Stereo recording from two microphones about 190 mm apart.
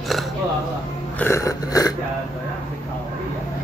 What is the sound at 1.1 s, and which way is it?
Burping, 10° left (ahead or behind).